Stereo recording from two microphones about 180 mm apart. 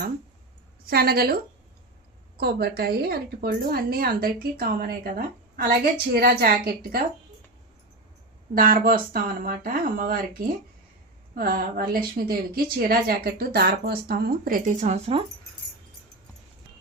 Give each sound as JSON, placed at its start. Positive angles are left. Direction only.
{"t": 0.9, "sound": "a woman's voice", "side_deg": -55}
{"t": 2.4, "sound": "a woman's voice", "side_deg": -60}
{"t": 8.5, "sound": "a woman's voice", "side_deg": -50}